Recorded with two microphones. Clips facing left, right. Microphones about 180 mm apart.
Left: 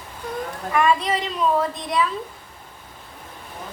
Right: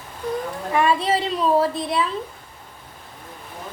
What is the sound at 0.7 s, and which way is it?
A woman's voice, 30° right (ahead or behind).